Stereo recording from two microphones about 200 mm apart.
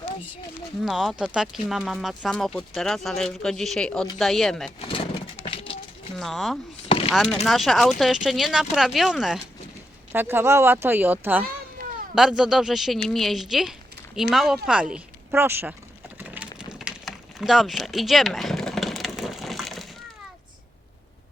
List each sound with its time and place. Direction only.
0.8 s speech: centre (ahead or behind)
4.8 s bird: 25° left (ahead or behind)
6.1 s speech: centre (ahead or behind)
6.8 s a sound: 30° left (ahead or behind)
7.1 s speech: centre (ahead or behind)
16.1 s a sound: 10° right (ahead or behind)